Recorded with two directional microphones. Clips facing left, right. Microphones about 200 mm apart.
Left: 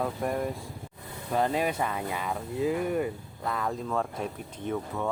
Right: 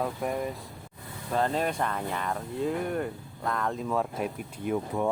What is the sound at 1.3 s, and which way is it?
Speech, 10° left (ahead or behind).